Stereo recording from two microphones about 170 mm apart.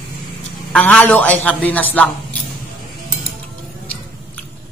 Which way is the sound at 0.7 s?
5° left (ahead or behind).